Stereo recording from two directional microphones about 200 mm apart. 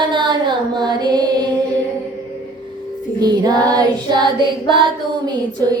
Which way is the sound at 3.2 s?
20° right (ahead or behind).